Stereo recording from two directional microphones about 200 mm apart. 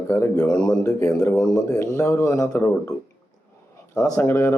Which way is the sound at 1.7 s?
15° left (ahead or behind).